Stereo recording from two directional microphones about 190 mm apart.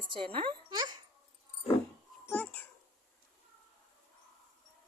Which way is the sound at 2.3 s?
5° left (ahead or behind).